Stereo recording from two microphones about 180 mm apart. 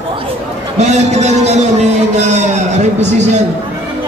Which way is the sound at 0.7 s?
40° right (ahead or behind).